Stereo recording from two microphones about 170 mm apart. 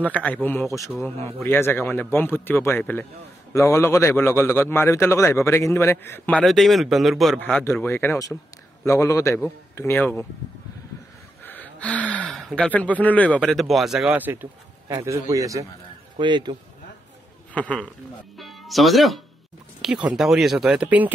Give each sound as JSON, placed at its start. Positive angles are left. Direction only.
{"t": 0.0, "sound": "a man's voice", "side_deg": 10}
{"t": 7.6, "sound": "a man's voice", "side_deg": 15}
{"t": 11.4, "sound": "gasp", "side_deg": 10}
{"t": 13.4, "sound": "a man's voice", "side_deg": 0}
{"t": 17.6, "sound": "a man's voice", "side_deg": 10}